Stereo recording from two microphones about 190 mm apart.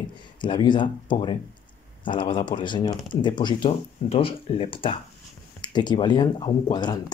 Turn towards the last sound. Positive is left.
turn(degrees=20)  # may be behind; listen again after turning